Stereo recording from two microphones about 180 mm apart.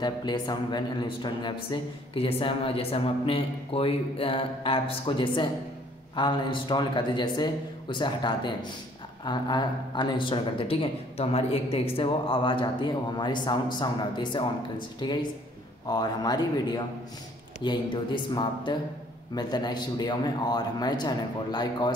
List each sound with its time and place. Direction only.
0.0 s speech: 25° left (ahead or behind)